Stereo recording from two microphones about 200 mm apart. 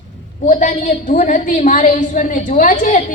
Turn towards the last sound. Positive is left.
turn(degrees=40)  # may be behind; listen again after turning